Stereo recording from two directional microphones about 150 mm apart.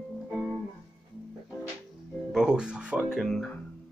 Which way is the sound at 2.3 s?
5° right (ahead or behind).